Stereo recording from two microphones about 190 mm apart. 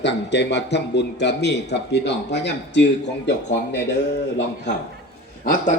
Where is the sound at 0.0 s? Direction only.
65° left (ahead or behind).